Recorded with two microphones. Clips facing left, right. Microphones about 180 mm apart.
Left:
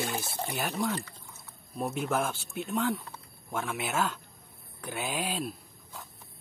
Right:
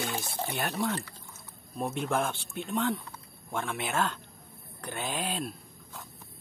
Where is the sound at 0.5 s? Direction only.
Centre (ahead or behind).